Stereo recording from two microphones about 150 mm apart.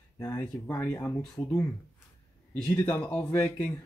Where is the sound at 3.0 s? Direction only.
10° left (ahead or behind).